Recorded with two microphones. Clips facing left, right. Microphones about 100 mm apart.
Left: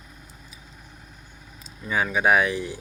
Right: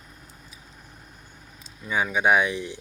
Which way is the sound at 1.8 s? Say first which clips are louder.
Left 1 dB; centre (ahead or behind).